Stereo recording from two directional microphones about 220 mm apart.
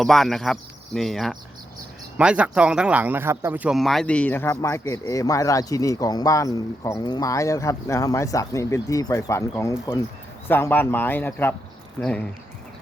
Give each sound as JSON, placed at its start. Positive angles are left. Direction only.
{"t": 0.0, "sound": "speech", "side_deg": 0}